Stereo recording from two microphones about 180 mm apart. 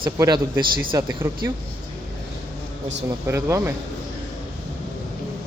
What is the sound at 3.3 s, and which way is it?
Speech, 15° right (ahead or behind).